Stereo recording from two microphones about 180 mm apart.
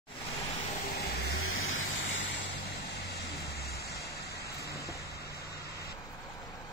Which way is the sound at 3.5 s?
60° left (ahead or behind).